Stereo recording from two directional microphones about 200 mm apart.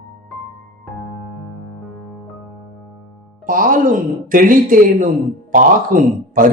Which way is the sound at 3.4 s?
45° right (ahead or behind).